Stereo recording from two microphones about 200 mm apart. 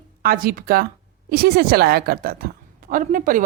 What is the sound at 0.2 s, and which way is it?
A woman's voice, 45° right (ahead or behind).